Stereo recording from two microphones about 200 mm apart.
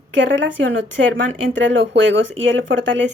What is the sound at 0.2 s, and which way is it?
Speech, 65° right (ahead or behind).